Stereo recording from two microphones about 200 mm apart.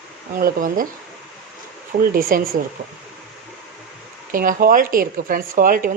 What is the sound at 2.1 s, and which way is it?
Speech, 45° right (ahead or behind).